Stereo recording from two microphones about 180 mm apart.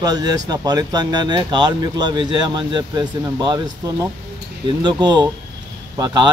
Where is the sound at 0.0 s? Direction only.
20° right (ahead or behind).